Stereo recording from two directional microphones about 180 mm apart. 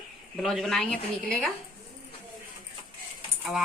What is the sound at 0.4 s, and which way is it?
A woman's voice, centre (ahead or behind).